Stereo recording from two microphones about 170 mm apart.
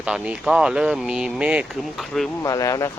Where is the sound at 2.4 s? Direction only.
20° left (ahead or behind).